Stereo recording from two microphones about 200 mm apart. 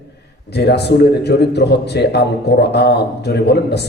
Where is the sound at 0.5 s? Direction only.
55° left (ahead or behind).